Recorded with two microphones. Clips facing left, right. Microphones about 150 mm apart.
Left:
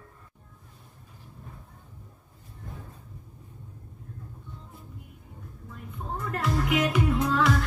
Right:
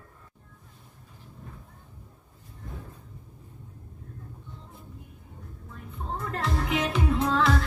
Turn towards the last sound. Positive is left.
turn(degrees=-30)  # may be behind; listen again after turning